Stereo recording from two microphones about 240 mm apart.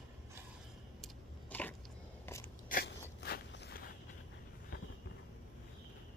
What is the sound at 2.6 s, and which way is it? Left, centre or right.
Biting, left.